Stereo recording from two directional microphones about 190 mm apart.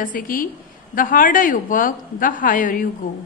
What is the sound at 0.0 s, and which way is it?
A woman's voice, 45° left (ahead or behind).